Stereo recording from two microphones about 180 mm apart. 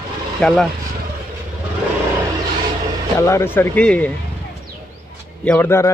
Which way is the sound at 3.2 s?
15° left (ahead or behind).